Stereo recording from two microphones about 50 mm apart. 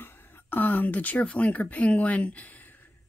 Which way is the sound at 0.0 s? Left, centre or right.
Left.